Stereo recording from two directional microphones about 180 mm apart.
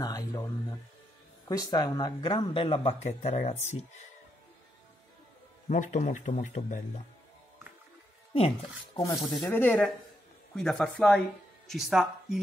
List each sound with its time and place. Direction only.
0.0 s a sound: 20° left (ahead or behind)
1.5 s speech: 20° left (ahead or behind); by 3.7 s 40° left (ahead or behind)
5.7 s a man's voice: 45° left (ahead or behind)
8.9 s speech: 20° left (ahead or behind)
9.4 s speech: 10° left (ahead or behind)